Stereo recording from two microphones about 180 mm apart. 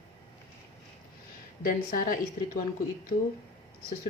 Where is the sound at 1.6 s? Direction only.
50° left (ahead or behind).